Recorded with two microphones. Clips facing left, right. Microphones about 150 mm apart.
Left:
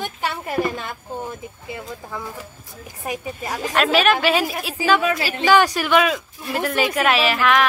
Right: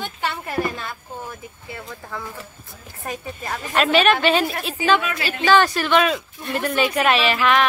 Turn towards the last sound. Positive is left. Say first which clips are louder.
# even
turn(degrees=0)  # may be behind; listen again after turning